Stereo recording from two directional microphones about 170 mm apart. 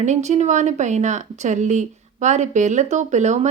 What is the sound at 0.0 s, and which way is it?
Speech, 45° right (ahead or behind).